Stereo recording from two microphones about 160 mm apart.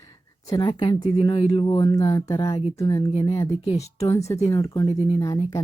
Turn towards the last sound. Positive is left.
turn(degrees=20)  # may be behind; listen again after turning